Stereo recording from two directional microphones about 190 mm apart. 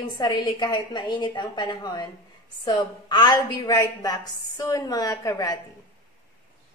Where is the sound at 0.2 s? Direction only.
20° left (ahead or behind).